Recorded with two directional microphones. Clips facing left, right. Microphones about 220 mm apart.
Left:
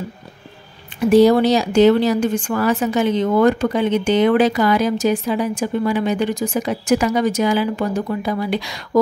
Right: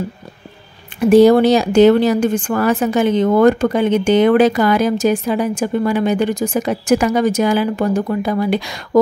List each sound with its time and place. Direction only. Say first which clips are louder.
1.1 s speech: right 3 dB; 50° right (ahead or behind)